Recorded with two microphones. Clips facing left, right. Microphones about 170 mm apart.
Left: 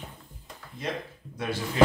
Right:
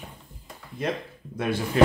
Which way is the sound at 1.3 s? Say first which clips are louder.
Right 5 dB; 55° right (ahead or behind).